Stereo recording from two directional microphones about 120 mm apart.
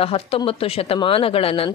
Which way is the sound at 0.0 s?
50° left (ahead or behind).